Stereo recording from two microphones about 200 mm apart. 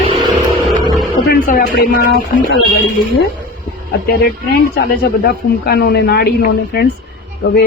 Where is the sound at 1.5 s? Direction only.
50° left (ahead or behind).